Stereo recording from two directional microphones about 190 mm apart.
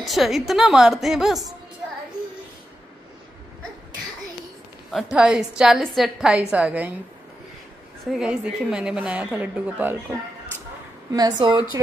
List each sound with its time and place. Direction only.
0.0 s a woman's voice: centre (ahead or behind)
4.9 s a woman's voice: centre (ahead or behind)
8.1 s a woman's voice: 5° right (ahead or behind)
11.1 s speech: 20° right (ahead or behind)